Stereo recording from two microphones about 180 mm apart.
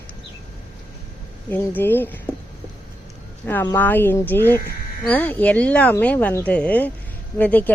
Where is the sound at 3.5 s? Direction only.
10° left (ahead or behind).